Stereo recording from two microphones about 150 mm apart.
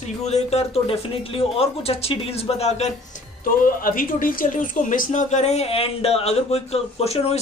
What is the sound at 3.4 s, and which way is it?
Speech, 70° left (ahead or behind).